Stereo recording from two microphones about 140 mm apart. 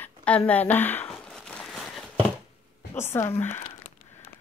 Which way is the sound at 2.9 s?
20° left (ahead or behind).